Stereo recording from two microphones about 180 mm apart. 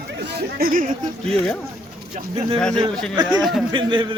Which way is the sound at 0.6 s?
50° right (ahead or behind).